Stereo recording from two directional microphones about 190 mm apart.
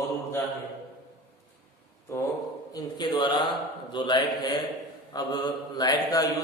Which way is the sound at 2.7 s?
20° left (ahead or behind).